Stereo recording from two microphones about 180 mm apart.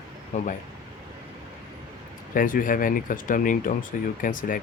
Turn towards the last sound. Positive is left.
turn(degrees=50)  # may be behind; listen again after turning